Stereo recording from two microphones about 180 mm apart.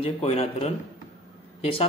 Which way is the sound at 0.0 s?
35° left (ahead or behind).